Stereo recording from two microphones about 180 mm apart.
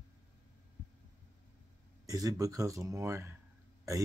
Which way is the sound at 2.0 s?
20° right (ahead or behind).